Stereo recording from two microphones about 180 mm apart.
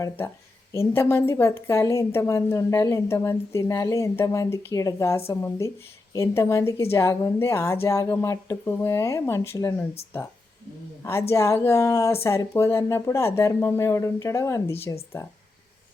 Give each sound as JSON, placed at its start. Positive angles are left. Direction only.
{"t": 0.7, "sound": "speech", "side_deg": 15}
{"t": 11.0, "sound": "speech", "side_deg": 15}